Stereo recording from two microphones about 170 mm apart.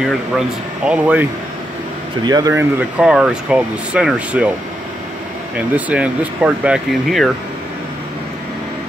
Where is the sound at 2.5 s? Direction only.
10° right (ahead or behind).